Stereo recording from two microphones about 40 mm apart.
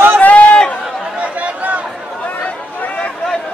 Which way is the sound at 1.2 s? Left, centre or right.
Right.